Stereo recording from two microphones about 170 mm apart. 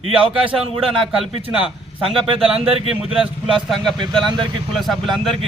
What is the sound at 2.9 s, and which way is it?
Speech, 5° right (ahead or behind).